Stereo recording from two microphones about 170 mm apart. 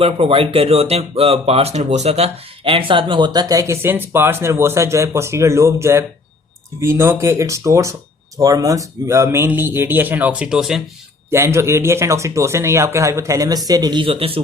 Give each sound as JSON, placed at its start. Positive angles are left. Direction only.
{"t": 0.0, "sound": "speech", "side_deg": -35}
{"t": 11.3, "sound": "speech", "side_deg": -15}